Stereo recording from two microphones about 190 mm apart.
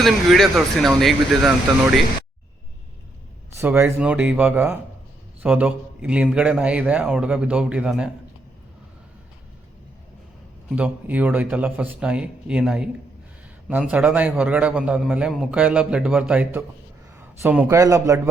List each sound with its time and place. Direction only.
0.0 s speech: centre (ahead or behind)
3.6 s a man's voice: 10° right (ahead or behind)
10.7 s a man's voice: 5° right (ahead or behind)